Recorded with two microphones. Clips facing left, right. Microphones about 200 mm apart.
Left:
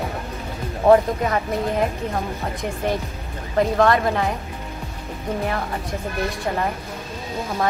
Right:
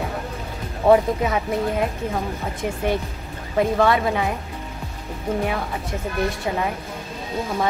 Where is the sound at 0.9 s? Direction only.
5° right (ahead or behind).